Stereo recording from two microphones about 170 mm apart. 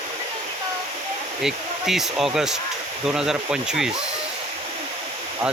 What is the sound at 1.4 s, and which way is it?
Speech, centre (ahead or behind).